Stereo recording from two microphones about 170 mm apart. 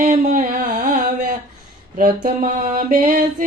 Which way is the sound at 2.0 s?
50° right (ahead or behind).